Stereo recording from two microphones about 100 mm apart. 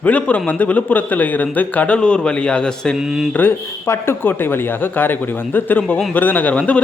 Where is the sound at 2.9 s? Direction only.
5° right (ahead or behind).